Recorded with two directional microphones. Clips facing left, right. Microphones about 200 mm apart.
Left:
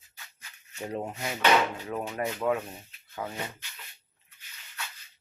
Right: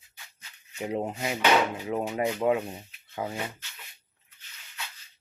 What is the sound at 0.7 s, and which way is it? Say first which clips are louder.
Speech: right 4 dB; 15° right (ahead or behind).